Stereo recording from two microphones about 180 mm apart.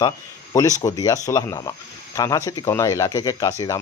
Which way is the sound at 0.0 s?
20° left (ahead or behind).